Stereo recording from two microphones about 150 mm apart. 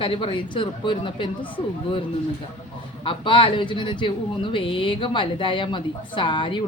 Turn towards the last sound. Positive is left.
turn(degrees=35)  # may be behind; listen again after turning